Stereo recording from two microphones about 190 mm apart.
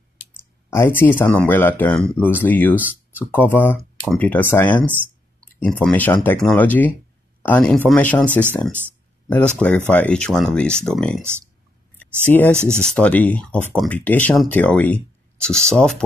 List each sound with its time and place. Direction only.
0.4 s speech: 10° left (ahead or behind)
4.8 s a sound: 10° right (ahead or behind)
5.6 s speech: 10° left (ahead or behind)
12.3 s speech: 10° left (ahead or behind)